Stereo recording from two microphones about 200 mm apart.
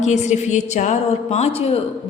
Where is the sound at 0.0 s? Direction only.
35° left (ahead or behind).